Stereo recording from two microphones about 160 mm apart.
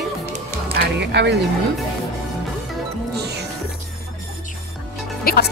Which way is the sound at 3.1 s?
90° right.